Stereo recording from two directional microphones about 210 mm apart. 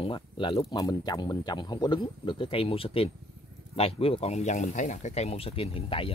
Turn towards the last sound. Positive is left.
turn(degrees=25)  # may be behind; listen again after turning